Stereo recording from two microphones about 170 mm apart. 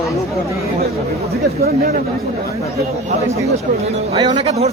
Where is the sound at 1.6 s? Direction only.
65° right (ahead or behind).